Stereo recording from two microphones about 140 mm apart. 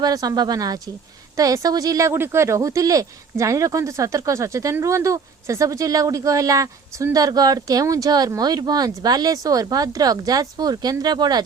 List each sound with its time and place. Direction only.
0.0 s speech: 25° right (ahead or behind)